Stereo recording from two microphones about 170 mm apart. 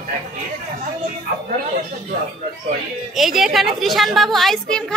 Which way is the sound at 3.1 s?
Centre (ahead or behind).